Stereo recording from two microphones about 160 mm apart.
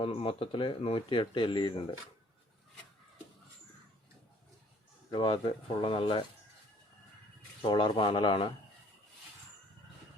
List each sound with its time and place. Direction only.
0.0 s speech: 35° left (ahead or behind)
5.1 s speech: 30° left (ahead or behind)
7.6 s speech: 30° left (ahead or behind)